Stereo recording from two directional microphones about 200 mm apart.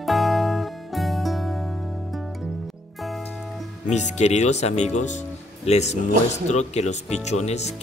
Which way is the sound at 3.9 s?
35° left (ahead or behind).